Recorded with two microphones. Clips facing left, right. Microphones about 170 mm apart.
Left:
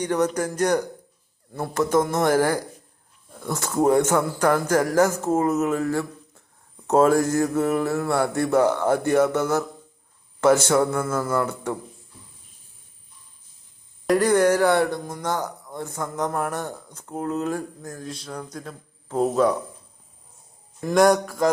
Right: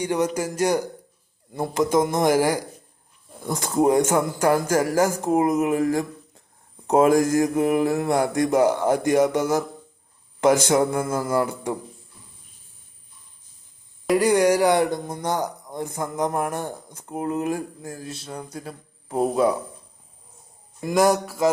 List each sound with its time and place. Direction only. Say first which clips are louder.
0.0 s speech: left 1 dB; 10° right (ahead or behind)
11.0 s mantra: even; 30° right (ahead or behind)
11.3 s speech: right 1 dB; 10° right (ahead or behind)
14.1 s speech: even; 10° right (ahead or behind)
20.8 s speech: left 2 dB; 5° right (ahead or behind)